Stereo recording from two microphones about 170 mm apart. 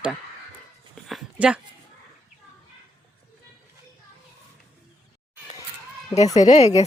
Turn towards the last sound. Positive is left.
turn(degrees=40)  # may be behind; listen again after turning